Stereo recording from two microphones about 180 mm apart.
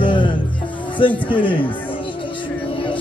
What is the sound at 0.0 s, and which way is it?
Music, 25° left (ahead or behind).